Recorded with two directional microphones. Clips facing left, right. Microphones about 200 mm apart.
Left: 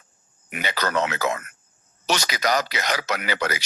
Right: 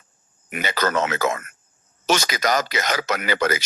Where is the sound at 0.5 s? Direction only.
45° right (ahead or behind).